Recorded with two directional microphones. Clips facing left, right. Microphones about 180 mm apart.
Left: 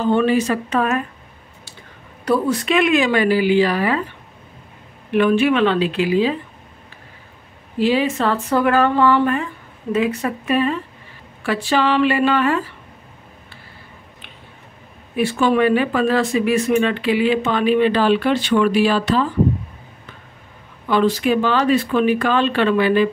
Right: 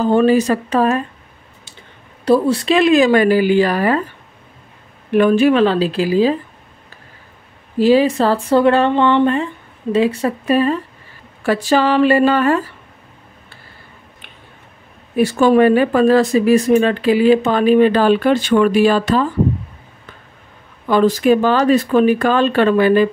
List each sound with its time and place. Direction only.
0.0 s speech: 40° right (ahead or behind)
2.2 s speech: 30° right (ahead or behind)
5.1 s speech: 40° right (ahead or behind)
7.8 s speech: 40° right (ahead or behind)
15.1 s speech: 40° right (ahead or behind)
20.9 s speech: 45° right (ahead or behind)